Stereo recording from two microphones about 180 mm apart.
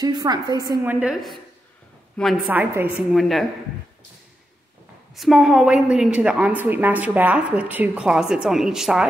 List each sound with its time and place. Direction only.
0.0 s a woman's voice: 20° right (ahead or behind)
0.8 s a woman's voice: 5° right (ahead or behind)
2.5 s a woman's voice: 10° right (ahead or behind)
3.2 s a woman's voice: centre (ahead or behind)
5.1 s a woman's voice: centre (ahead or behind)